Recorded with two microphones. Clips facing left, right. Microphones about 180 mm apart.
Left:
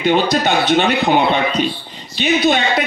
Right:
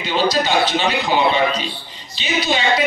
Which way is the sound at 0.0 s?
60° left (ahead or behind).